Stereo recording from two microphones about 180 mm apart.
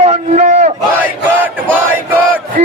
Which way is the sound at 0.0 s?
35° right (ahead or behind).